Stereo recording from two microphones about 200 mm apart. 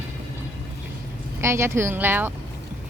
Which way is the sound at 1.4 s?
15° right (ahead or behind).